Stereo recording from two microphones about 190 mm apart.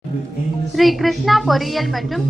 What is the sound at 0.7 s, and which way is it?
A woman's voice, centre (ahead or behind).